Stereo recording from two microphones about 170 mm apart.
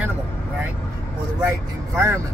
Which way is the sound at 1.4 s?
15° right (ahead or behind).